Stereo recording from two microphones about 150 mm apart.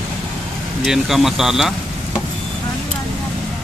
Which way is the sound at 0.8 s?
Centre (ahead or behind).